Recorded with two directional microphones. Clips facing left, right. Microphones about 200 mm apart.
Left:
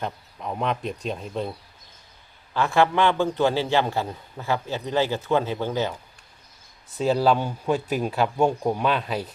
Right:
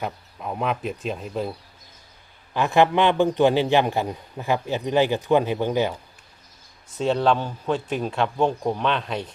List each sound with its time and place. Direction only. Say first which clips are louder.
0.0 s speech: right 1 dB; 5° right (ahead or behind)
2.5 s a man's voice: right 2 dB; 15° right (ahead or behind)
7.0 s speech: even; 5° left (ahead or behind)